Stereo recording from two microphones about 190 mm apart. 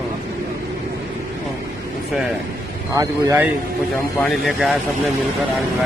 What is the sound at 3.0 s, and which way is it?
Speech, 15° right (ahead or behind).